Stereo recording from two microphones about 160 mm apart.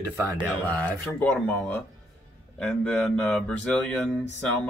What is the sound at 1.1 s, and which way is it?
Speech, 10° left (ahead or behind).